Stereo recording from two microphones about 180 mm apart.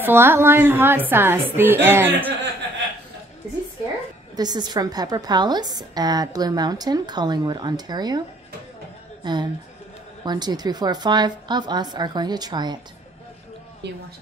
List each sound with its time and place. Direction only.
0.0 s a woman's voice: 15° right (ahead or behind)
4.4 s a woman's voice: 25° right (ahead or behind)
9.2 s a woman's voice: 25° right (ahead or behind)
13.8 s speech: 70° right (ahead or behind)